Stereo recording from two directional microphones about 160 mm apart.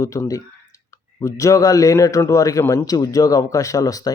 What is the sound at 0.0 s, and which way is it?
Speech, 20° left (ahead or behind).